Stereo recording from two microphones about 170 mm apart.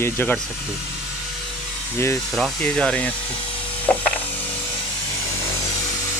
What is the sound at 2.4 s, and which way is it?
Speech, 5° left (ahead or behind).